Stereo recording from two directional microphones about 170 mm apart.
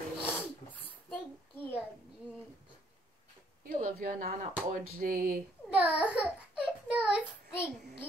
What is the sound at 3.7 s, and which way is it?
Speech, 55° right (ahead or behind).